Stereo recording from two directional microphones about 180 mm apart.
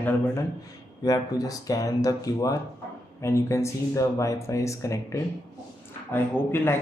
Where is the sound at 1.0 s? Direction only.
20° left (ahead or behind).